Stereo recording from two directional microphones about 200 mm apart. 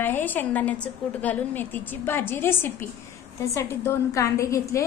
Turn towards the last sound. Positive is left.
turn(degrees=15)  # may be behind; listen again after turning